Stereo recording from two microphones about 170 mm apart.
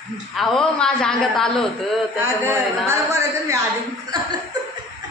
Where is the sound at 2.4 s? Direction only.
15° right (ahead or behind).